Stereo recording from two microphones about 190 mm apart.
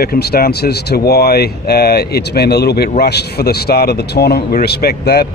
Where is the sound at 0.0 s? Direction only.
55° left (ahead or behind).